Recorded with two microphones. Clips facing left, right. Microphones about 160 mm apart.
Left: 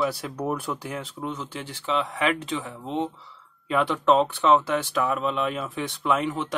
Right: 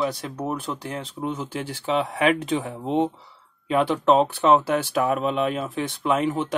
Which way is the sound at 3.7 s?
Centre (ahead or behind).